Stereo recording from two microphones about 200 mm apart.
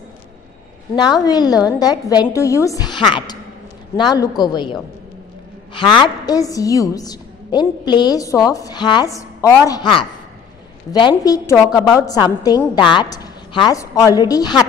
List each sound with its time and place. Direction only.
0.9 s a woman's voice: 20° left (ahead or behind)
5.8 s a woman's voice: 25° left (ahead or behind)